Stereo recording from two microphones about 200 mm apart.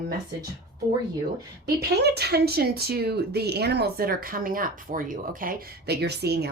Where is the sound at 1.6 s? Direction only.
55° right (ahead or behind).